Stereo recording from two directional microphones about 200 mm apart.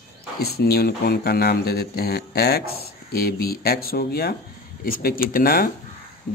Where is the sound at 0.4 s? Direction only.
50° left (ahead or behind).